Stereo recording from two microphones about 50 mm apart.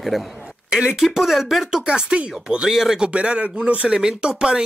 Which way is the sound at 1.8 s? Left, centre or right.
Right.